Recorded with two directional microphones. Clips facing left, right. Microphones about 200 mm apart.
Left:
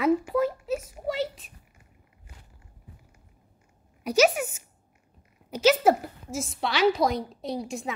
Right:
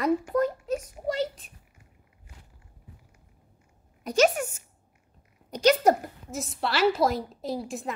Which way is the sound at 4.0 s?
10° left (ahead or behind).